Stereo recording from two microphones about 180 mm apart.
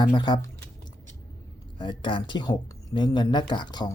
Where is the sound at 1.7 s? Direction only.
25° left (ahead or behind).